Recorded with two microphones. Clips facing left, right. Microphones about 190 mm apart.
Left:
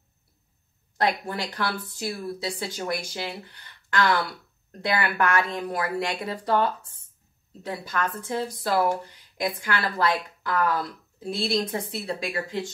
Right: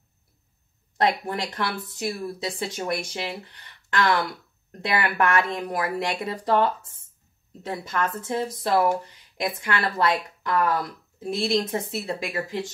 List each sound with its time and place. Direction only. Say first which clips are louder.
0.9 s speech: right 2 dB; 20° right (ahead or behind)